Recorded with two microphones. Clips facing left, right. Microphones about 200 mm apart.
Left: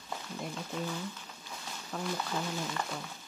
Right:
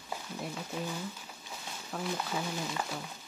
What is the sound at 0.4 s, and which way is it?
Speech, 10° right (ahead or behind).